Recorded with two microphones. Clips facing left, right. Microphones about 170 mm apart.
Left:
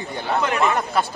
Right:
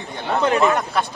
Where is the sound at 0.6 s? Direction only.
Centre (ahead or behind).